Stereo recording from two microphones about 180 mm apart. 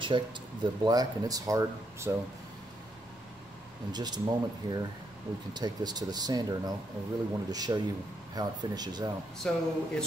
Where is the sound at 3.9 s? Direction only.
25° right (ahead or behind).